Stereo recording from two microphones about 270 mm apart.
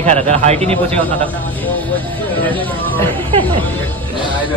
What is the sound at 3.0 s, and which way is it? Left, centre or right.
Speech, centre.